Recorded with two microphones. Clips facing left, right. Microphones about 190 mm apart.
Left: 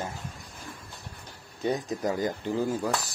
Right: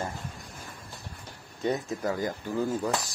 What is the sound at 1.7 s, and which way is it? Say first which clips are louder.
Speech: left 1 dB; 20° left (ahead or behind).